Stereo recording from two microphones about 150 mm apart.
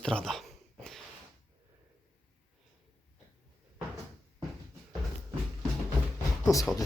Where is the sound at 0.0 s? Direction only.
5° left (ahead or behind).